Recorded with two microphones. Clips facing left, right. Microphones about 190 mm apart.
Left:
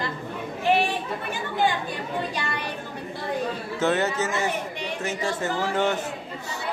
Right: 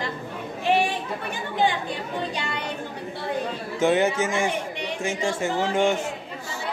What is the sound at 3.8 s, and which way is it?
Speech, 10° right (ahead or behind).